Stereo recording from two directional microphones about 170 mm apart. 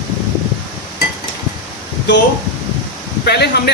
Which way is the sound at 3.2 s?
70° left (ahead or behind).